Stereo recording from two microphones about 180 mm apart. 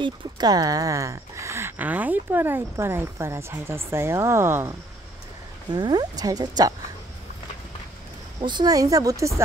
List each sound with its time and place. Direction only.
0.0 s speech: 20° right (ahead or behind)
8.4 s speech: 25° right (ahead or behind)